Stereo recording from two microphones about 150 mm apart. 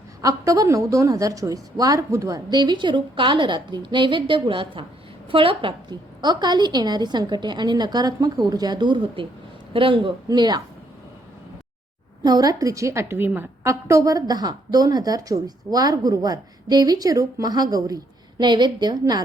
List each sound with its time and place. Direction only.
0.2 s a woman's voice: 25° right (ahead or behind)
12.2 s a woman's voice: 25° right (ahead or behind)